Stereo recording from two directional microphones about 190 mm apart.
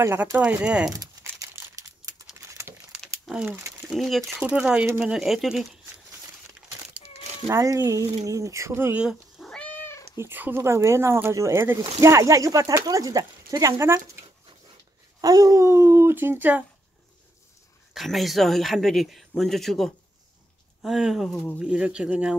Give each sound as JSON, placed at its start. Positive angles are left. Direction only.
{"t": 0.0, "sound": "speech", "side_deg": -15}
{"t": 0.9, "sound": "crumpling", "side_deg": -15}
{"t": 3.3, "sound": "speech", "side_deg": -5}
{"t": 7.4, "sound": "speech", "side_deg": -15}
{"t": 8.3, "sound": "cat", "side_deg": -15}
{"t": 10.1, "sound": "speech", "side_deg": -10}
{"t": 17.9, "sound": "speech", "side_deg": 0}